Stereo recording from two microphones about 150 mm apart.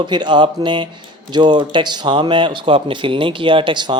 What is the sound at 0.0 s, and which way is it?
Speech, 30° right (ahead or behind).